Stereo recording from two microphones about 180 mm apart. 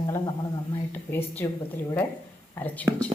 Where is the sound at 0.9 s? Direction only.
10° left (ahead or behind).